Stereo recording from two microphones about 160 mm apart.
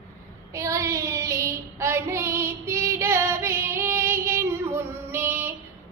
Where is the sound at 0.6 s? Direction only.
20° right (ahead or behind).